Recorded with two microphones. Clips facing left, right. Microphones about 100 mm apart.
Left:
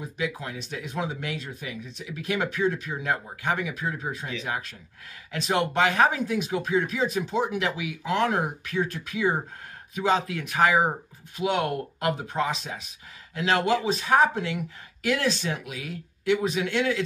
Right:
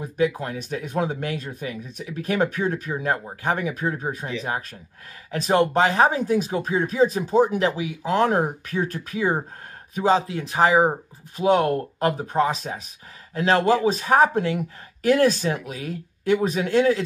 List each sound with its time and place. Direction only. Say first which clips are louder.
0.0 s speech: right 8 dB; 45° right (ahead or behind)